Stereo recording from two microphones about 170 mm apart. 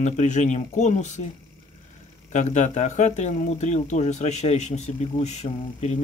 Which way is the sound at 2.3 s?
45° left (ahead or behind).